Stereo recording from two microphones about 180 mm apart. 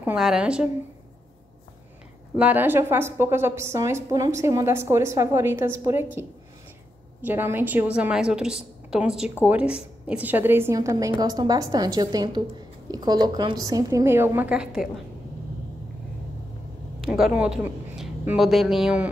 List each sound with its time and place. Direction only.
0.0 s a woman's voice: 5° right (ahead or behind)
2.3 s a woman's voice: 10° right (ahead or behind)
7.2 s a woman's voice: 10° right (ahead or behind)
17.0 s speech: centre (ahead or behind)